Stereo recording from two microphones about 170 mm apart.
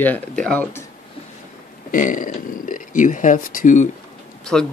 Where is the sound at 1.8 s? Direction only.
50° left (ahead or behind).